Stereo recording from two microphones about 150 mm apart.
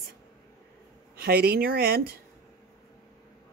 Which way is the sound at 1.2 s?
90° right.